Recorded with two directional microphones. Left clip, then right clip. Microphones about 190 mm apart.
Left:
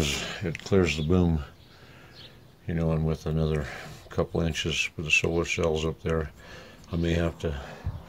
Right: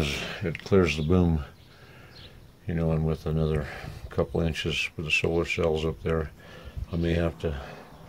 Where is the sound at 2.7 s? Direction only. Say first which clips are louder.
Even; centre (ahead or behind).